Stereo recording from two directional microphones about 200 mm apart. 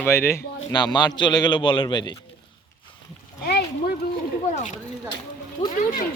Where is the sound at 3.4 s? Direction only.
55° left (ahead or behind).